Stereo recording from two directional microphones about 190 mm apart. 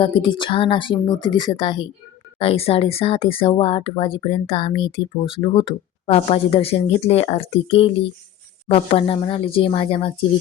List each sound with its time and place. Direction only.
0.0 s speech: 25° left (ahead or behind)